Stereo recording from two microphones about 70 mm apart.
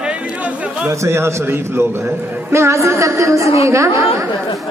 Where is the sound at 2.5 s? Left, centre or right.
Right.